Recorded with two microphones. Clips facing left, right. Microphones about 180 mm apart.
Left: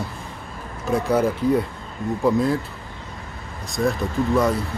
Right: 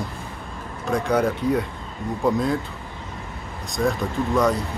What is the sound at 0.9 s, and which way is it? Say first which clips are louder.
Speech: left 1 dB; 5° left (ahead or behind).